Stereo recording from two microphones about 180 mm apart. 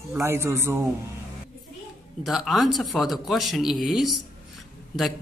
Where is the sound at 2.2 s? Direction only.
Centre (ahead or behind).